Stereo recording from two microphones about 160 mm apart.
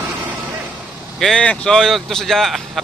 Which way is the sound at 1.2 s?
5° left (ahead or behind).